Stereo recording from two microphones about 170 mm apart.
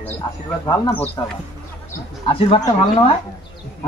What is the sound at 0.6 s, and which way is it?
Speech, 20° left (ahead or behind).